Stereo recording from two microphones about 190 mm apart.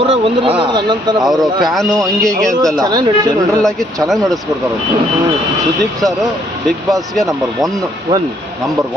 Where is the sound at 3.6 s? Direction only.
Centre (ahead or behind).